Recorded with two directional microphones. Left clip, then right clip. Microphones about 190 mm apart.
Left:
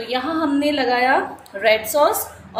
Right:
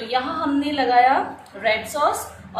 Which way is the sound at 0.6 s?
45° left (ahead or behind).